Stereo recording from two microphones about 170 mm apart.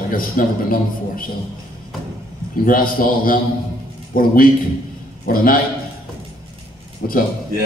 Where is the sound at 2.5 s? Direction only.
55° left (ahead or behind).